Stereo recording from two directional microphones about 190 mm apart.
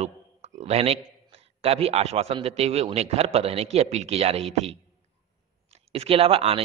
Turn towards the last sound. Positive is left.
turn(degrees=-30)  # may be behind; listen again after turning